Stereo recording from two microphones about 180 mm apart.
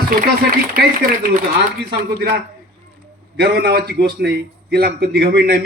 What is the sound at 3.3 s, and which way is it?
Speech, 65° right (ahead or behind).